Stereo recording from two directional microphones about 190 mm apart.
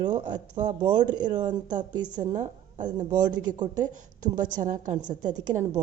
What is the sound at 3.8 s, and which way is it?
Speech, 40° right (ahead or behind).